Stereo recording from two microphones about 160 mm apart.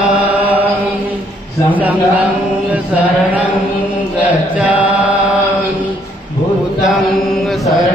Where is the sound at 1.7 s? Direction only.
10° right (ahead or behind).